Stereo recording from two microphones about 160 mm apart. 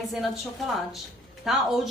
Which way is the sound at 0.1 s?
Centre (ahead or behind).